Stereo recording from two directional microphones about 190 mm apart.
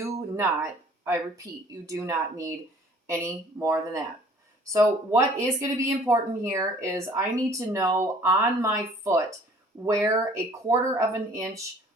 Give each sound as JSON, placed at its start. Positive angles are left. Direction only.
{"t": 0.3, "sound": "a woman's voice", "side_deg": -10}